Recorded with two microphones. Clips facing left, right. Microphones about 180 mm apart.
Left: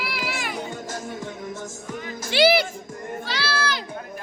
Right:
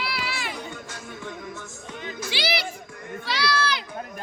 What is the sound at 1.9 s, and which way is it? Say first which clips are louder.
Music: left 2 dB; 20° right (ahead or behind).